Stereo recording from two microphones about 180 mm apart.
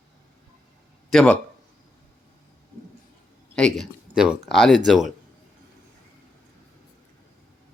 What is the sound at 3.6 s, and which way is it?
Speech, centre (ahead or behind).